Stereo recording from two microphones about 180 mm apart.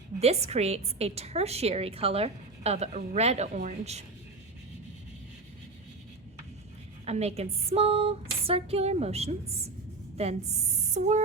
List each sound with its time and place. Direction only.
0.2 s a woman's voice: 35° right (ahead or behind)
7.0 s a woman's voice: 35° right (ahead or behind)